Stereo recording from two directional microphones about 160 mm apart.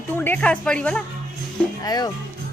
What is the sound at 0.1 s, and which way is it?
Speech, 10° left (ahead or behind).